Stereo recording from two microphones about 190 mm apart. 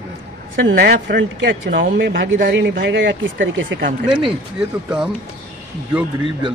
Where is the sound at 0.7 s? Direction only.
60° right (ahead or behind).